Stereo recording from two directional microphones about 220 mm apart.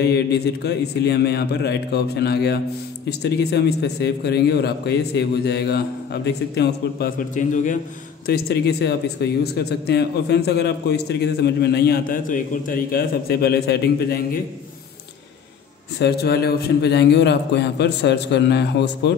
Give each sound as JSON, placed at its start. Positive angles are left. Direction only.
{"t": 0.0, "sound": "speech", "side_deg": 50}
{"t": 16.0, "sound": "speech", "side_deg": 45}